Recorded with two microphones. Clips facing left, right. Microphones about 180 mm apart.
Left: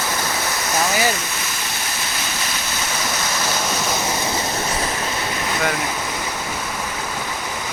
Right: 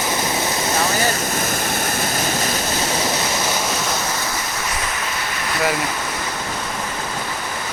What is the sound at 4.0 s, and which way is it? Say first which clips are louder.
Waves: left 2 dB; 15° left (ahead or behind).